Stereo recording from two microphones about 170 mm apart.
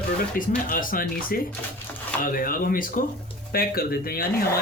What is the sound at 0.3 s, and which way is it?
Speech, 55° left (ahead or behind).